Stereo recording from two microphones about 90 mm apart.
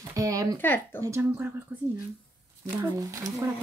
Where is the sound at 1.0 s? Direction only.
30° right (ahead or behind).